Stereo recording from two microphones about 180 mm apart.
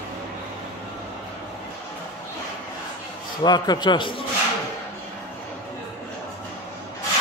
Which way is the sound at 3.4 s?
25° left (ahead or behind).